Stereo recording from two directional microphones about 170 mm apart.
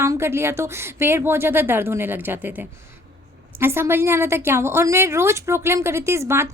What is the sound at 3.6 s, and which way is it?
A woman's voice, 15° right (ahead or behind).